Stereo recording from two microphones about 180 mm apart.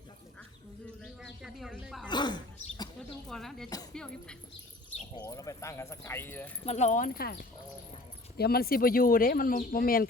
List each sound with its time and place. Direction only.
1.0 s a sound: centre (ahead or behind)
2.0 s a sound: 25° left (ahead or behind)
3.2 s chink: centre (ahead or behind)
3.9 s music: 5° left (ahead or behind)
5.1 s speech: 20° left (ahead or behind)
6.7 s speech: 40° left (ahead or behind)